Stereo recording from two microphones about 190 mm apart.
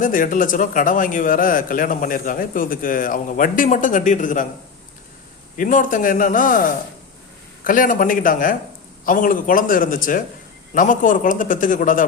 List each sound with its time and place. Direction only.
0.0 s a man's voice: 45° left (ahead or behind)
5.5 s a man's voice: 45° left (ahead or behind)